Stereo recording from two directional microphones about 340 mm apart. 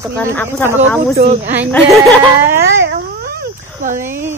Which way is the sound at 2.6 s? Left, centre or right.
Right.